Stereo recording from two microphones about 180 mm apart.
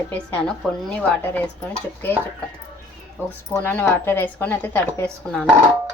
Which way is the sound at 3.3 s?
10° left (ahead or behind).